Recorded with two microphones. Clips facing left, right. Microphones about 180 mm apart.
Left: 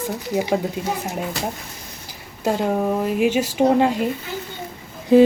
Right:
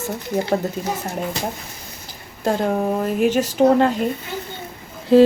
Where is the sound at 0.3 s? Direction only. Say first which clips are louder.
Even; 10° left (ahead or behind).